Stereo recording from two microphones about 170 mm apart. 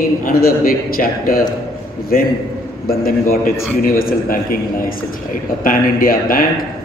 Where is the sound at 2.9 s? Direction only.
60° left (ahead or behind).